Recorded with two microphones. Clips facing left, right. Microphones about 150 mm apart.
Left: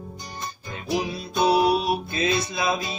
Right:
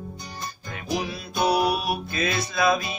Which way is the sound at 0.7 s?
25° left (ahead or behind).